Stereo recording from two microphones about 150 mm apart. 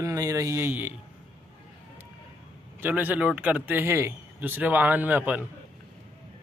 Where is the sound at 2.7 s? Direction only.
10° right (ahead or behind).